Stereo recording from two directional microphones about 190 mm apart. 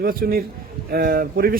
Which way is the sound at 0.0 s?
50° right (ahead or behind).